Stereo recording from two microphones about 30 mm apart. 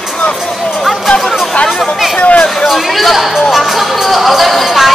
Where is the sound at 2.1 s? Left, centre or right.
Left.